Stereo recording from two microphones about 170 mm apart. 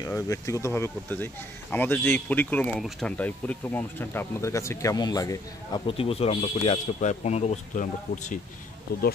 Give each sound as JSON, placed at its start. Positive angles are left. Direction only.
{"t": 0.0, "sound": "speech", "side_deg": 15}